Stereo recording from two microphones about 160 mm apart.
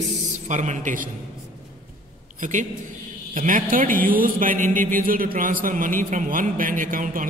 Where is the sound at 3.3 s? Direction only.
55° right (ahead or behind).